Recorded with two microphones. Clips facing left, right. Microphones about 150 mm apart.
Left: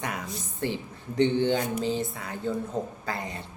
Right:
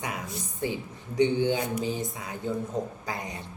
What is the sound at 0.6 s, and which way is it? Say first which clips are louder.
Speech: left 1 dB; 10° right (ahead or behind).